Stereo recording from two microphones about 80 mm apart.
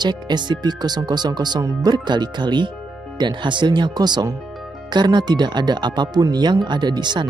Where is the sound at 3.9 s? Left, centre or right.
Right.